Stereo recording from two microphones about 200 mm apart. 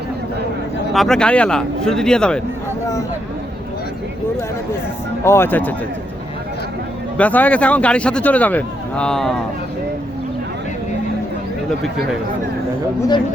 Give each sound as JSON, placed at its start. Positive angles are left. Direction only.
{"t": 0.9, "sound": "speech", "side_deg": 5}
{"t": 5.2, "sound": "a man's voice", "side_deg": 10}
{"t": 7.2, "sound": "a man's voice", "side_deg": 5}
{"t": 13.0, "sound": "speech", "side_deg": 20}